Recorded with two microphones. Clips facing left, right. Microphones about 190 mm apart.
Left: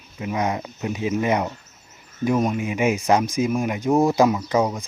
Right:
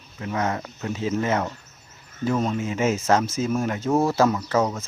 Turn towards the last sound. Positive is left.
turn(degrees=15)  # may be behind; listen again after turning